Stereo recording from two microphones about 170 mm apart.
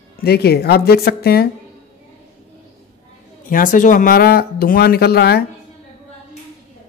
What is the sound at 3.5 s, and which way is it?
Speech, 50° left (ahead or behind).